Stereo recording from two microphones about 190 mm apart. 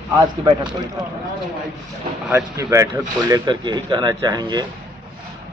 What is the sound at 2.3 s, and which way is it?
A man's voice, 10° right (ahead or behind).